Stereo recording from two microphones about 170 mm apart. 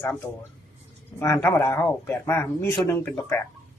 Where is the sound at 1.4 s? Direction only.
15° left (ahead or behind).